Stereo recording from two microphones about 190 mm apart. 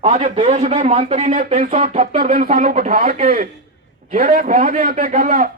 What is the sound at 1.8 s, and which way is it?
A man's voice, 45° right (ahead or behind).